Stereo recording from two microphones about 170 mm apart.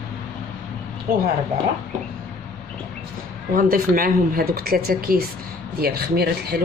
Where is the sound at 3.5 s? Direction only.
55° right (ahead or behind).